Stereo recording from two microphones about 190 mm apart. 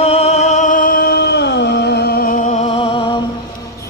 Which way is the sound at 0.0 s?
30° left (ahead or behind).